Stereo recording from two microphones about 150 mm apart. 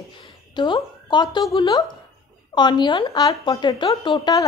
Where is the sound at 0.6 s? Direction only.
30° left (ahead or behind).